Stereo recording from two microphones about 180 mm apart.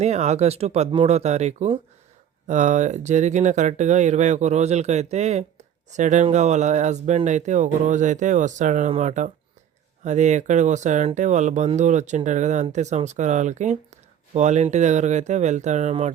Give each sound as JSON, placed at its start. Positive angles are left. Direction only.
{"t": 0.0, "sound": "speech", "side_deg": -40}